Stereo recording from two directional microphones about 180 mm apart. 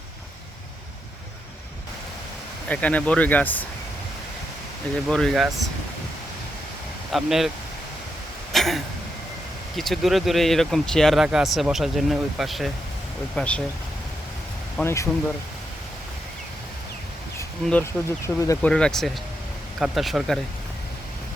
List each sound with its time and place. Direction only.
2.6 s speech: 5° left (ahead or behind)
5.0 s speech: centre (ahead or behind)
7.1 s speech: centre (ahead or behind)
8.5 s throat clearing: centre (ahead or behind)
9.7 s speech: centre (ahead or behind)
14.8 s speech: 15° left (ahead or behind)
17.6 s speech: 5° left (ahead or behind)
18.3 s speech: 15° left (ahead or behind)
18.7 s speech: 5° left (ahead or behind)